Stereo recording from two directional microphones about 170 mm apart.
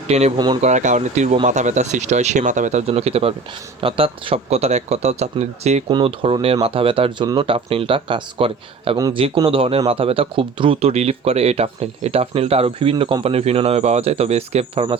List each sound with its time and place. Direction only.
0.1 s speech: 40° right (ahead or behind)
0.3 s speech: 25° right (ahead or behind)
0.6 s speech: 45° right (ahead or behind)